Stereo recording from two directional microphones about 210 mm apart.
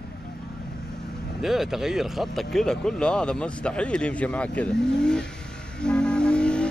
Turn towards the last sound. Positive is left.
turn(degrees=5)  # may be behind; listen again after turning